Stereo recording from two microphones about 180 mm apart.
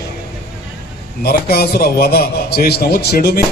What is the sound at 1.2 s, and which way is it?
A man's voice, 60° left (ahead or behind).